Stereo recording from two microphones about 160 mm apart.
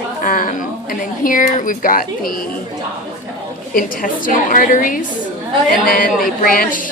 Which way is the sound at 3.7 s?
60° left (ahead or behind).